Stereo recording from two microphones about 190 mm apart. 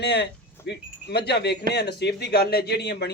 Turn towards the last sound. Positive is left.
turn(degrees=60)  # may be behind; listen again after turning